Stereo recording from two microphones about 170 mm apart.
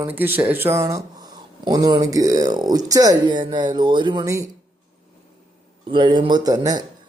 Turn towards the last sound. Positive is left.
turn(degrees=-20)  # may be behind; listen again after turning